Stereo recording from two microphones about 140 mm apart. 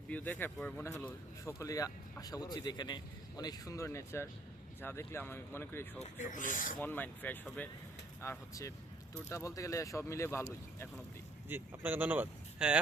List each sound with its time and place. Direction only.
0.1 s speech: 15° left (ahead or behind)
6.0 s speech: 65° left (ahead or behind)
6.7 s speech: 15° left (ahead or behind)
8.2 s speech: 20° left (ahead or behind)
11.4 s speech: 15° right (ahead or behind)